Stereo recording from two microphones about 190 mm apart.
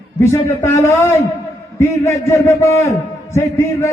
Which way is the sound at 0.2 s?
10° left (ahead or behind).